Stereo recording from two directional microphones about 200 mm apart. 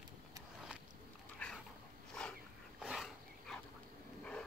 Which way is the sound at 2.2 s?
5° left (ahead or behind).